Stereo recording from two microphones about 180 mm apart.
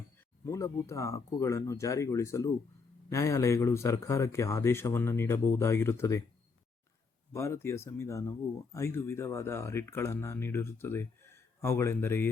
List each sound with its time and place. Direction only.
0.4 s speech: 15° left (ahead or behind)
7.3 s speech: 15° left (ahead or behind)